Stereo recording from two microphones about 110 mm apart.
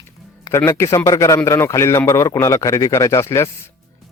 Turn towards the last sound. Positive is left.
turn(degrees=25)  # may be behind; listen again after turning